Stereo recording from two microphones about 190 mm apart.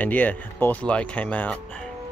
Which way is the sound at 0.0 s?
10° left (ahead or behind).